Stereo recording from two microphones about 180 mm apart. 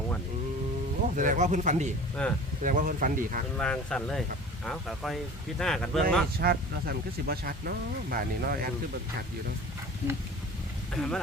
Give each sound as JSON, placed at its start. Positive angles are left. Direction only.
{"t": 1.1, "sound": "speech", "side_deg": -45}
{"t": 2.2, "sound": "speech", "side_deg": 5}
{"t": 2.6, "sound": "speech", "side_deg": -45}
{"t": 3.6, "sound": "speech", "side_deg": 5}
{"t": 6.4, "sound": "speech", "side_deg": -55}
{"t": 10.9, "sound": "speech", "side_deg": 5}